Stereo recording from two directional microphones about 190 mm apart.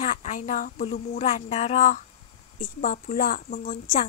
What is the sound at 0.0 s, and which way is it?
A woman's voice, 40° left (ahead or behind).